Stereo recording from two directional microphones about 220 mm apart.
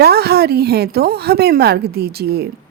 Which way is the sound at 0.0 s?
45° right (ahead or behind).